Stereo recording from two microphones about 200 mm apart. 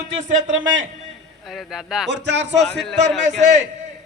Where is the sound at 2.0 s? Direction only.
60° right (ahead or behind).